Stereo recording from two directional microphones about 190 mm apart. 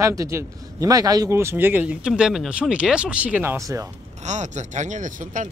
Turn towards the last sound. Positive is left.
turn(degrees=-40)  # may be behind; listen again after turning